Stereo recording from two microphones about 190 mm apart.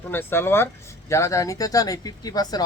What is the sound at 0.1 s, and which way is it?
Speech, 10° left (ahead or behind).